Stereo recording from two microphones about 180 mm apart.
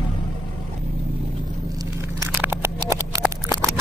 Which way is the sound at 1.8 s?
15° right (ahead or behind).